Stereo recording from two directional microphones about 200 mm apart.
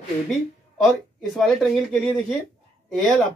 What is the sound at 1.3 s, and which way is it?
Speech, centre (ahead or behind).